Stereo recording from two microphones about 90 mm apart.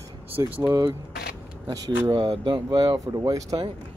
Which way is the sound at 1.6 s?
40° right (ahead or behind).